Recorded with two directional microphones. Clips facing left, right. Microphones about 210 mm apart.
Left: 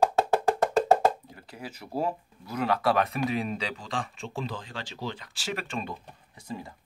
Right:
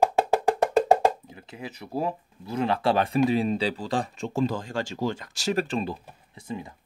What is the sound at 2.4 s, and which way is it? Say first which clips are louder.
Speech: right 2 dB; 25° right (ahead or behind).